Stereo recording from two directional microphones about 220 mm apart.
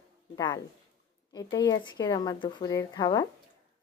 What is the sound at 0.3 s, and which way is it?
Speech, 20° left (ahead or behind).